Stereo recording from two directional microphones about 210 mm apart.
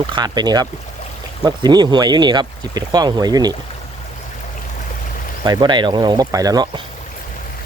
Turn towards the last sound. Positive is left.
turn(degrees=-20)  # may be behind; listen again after turning